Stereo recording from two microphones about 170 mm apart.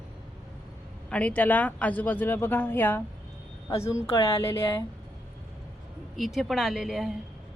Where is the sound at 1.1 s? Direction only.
10° left (ahead or behind).